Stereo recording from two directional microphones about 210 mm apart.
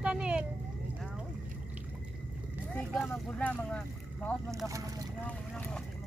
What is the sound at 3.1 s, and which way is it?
Speech, 5° left (ahead or behind).